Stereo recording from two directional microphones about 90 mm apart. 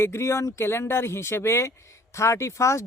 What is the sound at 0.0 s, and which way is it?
Speech, 30° left (ahead or behind).